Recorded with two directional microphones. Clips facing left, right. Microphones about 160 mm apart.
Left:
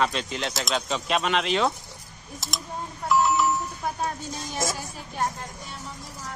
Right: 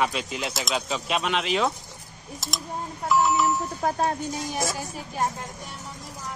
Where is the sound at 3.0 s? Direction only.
Centre (ahead or behind).